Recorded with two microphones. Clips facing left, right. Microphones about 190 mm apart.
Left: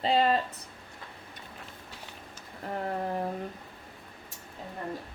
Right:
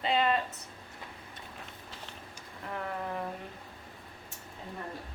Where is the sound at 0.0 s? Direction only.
35° left (ahead or behind).